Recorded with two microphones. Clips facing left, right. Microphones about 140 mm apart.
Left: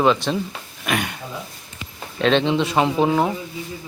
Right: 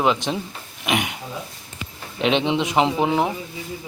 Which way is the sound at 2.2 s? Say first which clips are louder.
Left 2 dB; 15° right (ahead or behind).